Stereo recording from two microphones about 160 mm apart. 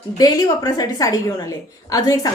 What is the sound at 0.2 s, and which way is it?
A woman's voice, 25° left (ahead or behind).